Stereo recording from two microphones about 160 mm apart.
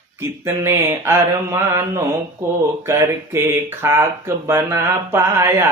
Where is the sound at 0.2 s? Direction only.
15° right (ahead or behind).